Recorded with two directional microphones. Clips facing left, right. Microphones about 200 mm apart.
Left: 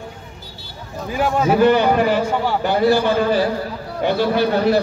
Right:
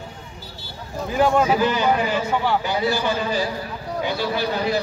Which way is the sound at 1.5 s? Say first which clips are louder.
Left 5 dB; 60° left (ahead or behind).